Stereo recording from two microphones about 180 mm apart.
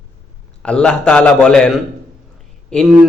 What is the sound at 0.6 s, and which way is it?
A man's voice, 5° left (ahead or behind).